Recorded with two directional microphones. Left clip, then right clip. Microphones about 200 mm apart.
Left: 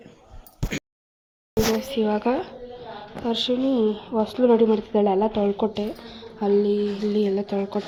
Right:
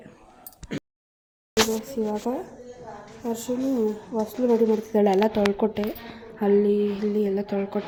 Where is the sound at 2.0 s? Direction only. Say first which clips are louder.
Left 6 dB; 15° left (ahead or behind).